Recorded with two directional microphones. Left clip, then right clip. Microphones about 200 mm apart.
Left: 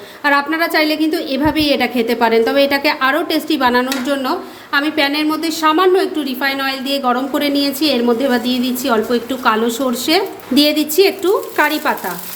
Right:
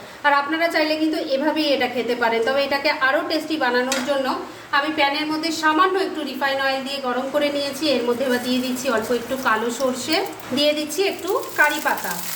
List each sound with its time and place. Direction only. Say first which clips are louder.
0.3 s a woman's voice: left 4 dB; 50° left (ahead or behind)